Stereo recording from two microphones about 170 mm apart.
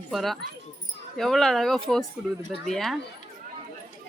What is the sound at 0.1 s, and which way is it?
Speech, centre (ahead or behind).